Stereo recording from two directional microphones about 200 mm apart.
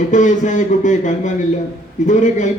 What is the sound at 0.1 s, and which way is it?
A man's voice, 40° left (ahead or behind).